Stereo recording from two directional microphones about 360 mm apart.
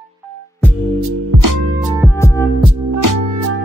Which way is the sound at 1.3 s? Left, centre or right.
Right.